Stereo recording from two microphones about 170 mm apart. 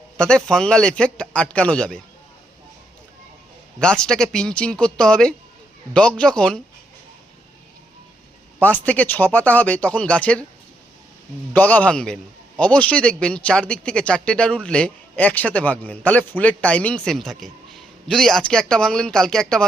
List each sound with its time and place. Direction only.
0.2 s speech: 5° left (ahead or behind)
3.8 s speech: 5° left (ahead or behind)
8.6 s a man's voice: 10° left (ahead or behind)
11.5 s a man's voice: 10° left (ahead or behind)